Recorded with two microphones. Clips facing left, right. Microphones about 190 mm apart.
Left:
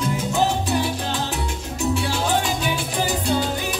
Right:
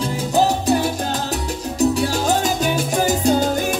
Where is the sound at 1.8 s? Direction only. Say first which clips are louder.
Right 5 dB; 40° right (ahead or behind).